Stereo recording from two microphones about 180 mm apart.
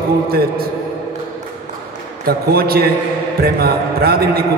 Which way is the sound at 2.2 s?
60° right (ahead or behind).